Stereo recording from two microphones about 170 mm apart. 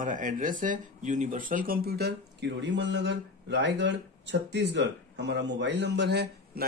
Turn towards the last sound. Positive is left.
turn(degrees=-80)